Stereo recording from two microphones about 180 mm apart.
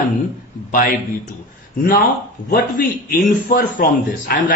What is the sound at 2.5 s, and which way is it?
A man's voice, 50° left (ahead or behind).